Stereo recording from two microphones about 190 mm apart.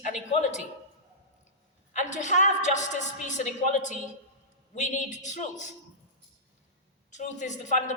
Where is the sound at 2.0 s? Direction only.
40° left (ahead or behind).